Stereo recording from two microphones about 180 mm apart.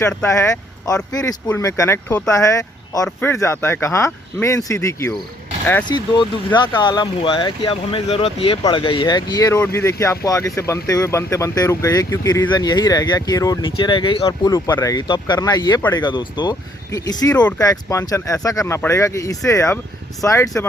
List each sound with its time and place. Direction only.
0.0 s speech: 5° left (ahead or behind)
0.3 s speech: 15° left (ahead or behind)